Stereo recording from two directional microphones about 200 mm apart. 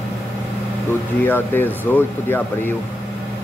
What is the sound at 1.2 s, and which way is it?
Speech, 10° left (ahead or behind).